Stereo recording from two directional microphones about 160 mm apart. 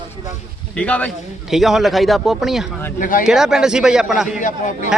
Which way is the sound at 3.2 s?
5° right (ahead or behind).